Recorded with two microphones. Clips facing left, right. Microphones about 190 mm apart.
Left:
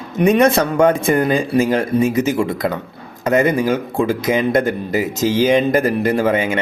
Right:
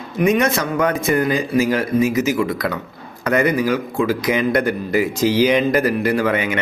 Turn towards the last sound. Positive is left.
turn(degrees=25)  # may be behind; listen again after turning